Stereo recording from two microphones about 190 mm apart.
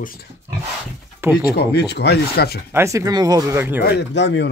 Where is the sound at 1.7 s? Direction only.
60° left (ahead or behind).